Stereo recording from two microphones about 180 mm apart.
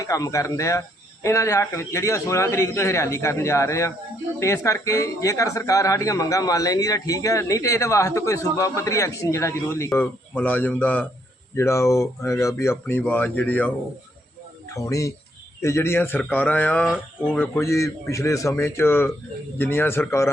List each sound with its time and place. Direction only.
0.0 s speech: 20° left (ahead or behind)